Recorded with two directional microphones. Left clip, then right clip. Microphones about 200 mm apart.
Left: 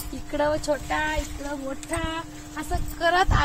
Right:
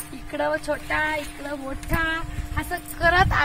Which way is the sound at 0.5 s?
35° left (ahead or behind).